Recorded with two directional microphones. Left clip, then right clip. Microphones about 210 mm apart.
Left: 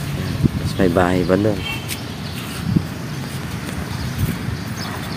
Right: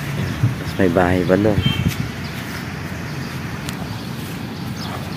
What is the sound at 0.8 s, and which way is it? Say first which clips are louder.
Speech: even; 5° right (ahead or behind).